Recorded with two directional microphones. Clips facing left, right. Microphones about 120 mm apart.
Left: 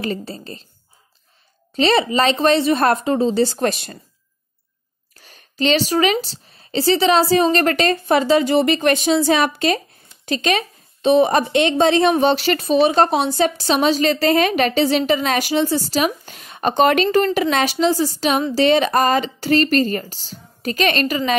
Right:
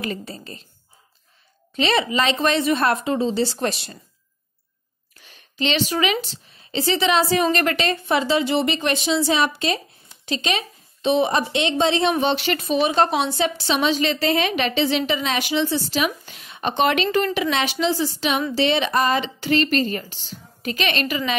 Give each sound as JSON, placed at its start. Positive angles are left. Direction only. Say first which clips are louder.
{"t": 0.0, "sound": "a woman's voice", "louder": "left 4 dB", "side_deg": 30}
{"t": 1.8, "sound": "a woman's voice", "louder": "left 4 dB", "side_deg": 35}
{"t": 5.1, "sound": "a sound", "louder": "left 4 dB", "side_deg": 40}
{"t": 6.2, "sound": "a woman's voice", "louder": "even", "side_deg": 35}